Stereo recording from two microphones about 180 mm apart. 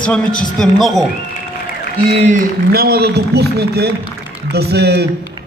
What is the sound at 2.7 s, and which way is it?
A man's voice, 60° right (ahead or behind).